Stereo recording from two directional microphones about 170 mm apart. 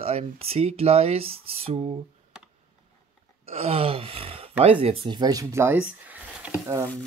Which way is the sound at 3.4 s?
35° right (ahead or behind).